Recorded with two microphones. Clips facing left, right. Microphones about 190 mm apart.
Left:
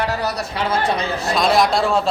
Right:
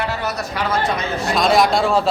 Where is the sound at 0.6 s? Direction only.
30° left (ahead or behind).